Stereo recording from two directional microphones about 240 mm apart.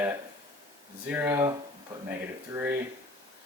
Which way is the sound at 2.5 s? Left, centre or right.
Centre.